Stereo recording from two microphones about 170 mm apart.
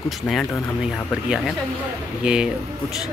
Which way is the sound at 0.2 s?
5° left (ahead or behind).